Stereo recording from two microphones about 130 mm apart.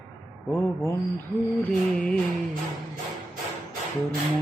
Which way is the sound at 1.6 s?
10° left (ahead or behind).